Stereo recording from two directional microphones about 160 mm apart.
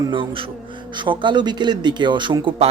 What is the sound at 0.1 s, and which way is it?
Speech, 30° right (ahead or behind).